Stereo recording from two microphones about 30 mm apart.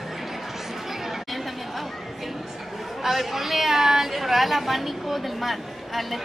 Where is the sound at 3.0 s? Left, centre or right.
Centre.